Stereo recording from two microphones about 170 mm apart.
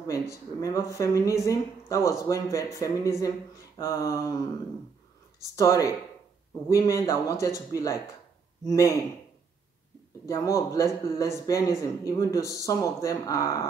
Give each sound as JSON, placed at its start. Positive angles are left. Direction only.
{"t": 0.0, "sound": "speech", "side_deg": 20}
{"t": 5.4, "sound": "speech", "side_deg": 20}
{"t": 10.2, "sound": "speech", "side_deg": 20}